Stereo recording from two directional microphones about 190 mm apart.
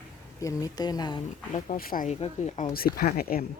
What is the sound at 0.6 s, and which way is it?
Speech, 20° left (ahead or behind).